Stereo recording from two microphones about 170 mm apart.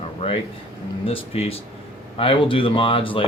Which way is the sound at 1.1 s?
35° left (ahead or behind).